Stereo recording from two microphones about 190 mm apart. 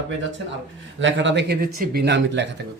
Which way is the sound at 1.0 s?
75° right (ahead or behind).